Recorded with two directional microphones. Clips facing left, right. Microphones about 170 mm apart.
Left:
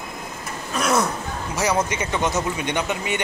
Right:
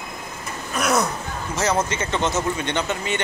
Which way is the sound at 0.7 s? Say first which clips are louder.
Even; 5° left (ahead or behind).